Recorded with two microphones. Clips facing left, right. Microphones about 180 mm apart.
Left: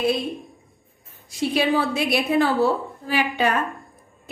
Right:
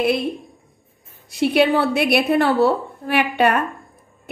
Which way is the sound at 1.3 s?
65° right (ahead or behind).